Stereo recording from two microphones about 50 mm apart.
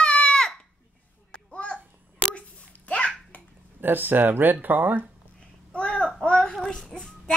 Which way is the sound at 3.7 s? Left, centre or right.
Right.